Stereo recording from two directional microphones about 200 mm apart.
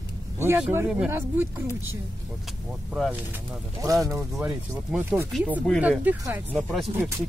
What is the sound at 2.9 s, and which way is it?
Speech, centre (ahead or behind).